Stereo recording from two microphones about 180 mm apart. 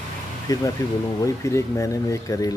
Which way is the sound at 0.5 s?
20° left (ahead or behind).